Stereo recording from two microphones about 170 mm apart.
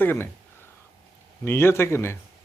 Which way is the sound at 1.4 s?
15° left (ahead or behind).